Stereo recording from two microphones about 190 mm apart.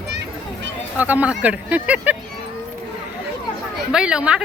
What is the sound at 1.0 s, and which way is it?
Speech, 10° right (ahead or behind).